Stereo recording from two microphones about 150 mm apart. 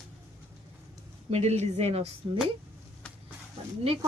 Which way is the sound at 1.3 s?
45° right (ahead or behind).